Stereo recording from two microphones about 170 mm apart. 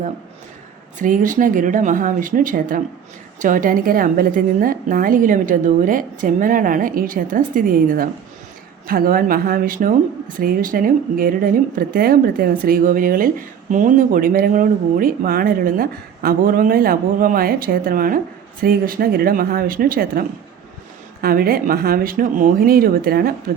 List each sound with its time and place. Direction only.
0.9 s a woman's voice: 50° right (ahead or behind)